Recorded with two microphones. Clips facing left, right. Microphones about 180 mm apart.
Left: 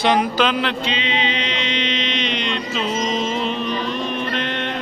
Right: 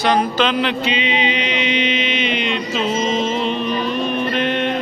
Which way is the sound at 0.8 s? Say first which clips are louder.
Right 3 dB; 15° right (ahead or behind).